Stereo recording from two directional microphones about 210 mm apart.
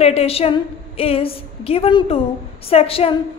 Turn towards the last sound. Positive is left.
turn(degrees=25)  # may be behind; listen again after turning